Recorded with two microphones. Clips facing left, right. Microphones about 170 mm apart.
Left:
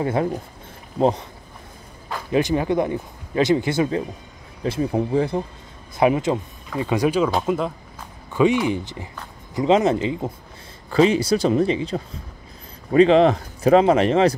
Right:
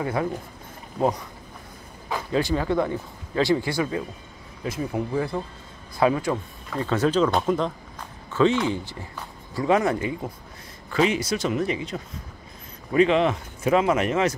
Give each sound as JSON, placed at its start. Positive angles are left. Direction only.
{"t": 0.0, "sound": "speech", "side_deg": 25}
{"t": 2.3, "sound": "speech", "side_deg": 20}